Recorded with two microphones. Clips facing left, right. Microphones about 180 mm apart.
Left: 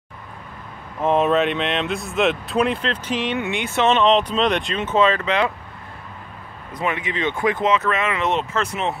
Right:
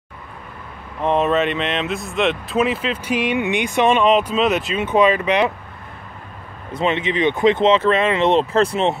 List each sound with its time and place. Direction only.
1.0 s speech: centre (ahead or behind); by 5.5 s 15° right (ahead or behind)
6.7 s speech: 25° right (ahead or behind)